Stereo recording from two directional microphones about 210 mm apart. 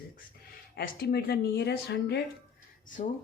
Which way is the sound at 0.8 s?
50° left (ahead or behind).